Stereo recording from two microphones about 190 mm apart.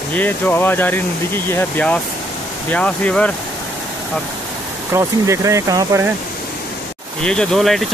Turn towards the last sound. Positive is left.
turn(degrees=0)  # may be behind; listen again after turning